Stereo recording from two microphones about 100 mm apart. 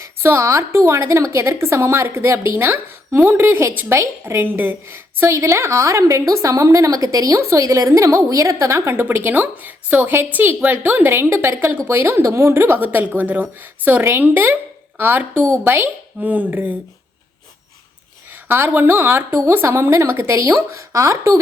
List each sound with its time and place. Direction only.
0.0 s a woman's voice: 25° right (ahead or behind)
18.4 s a woman's voice: 20° right (ahead or behind)